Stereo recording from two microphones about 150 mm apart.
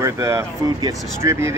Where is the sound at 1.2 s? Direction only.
20° right (ahead or behind).